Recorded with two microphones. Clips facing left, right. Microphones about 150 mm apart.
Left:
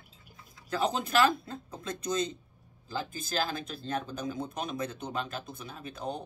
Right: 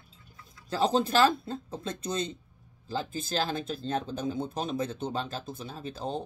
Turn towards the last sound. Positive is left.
turn(degrees=-30)  # may be behind; listen again after turning